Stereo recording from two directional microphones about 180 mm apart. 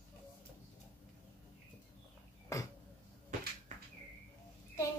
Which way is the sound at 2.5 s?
20° left (ahead or behind).